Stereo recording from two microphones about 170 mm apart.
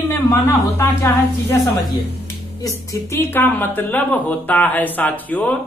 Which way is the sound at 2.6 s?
20° left (ahead or behind).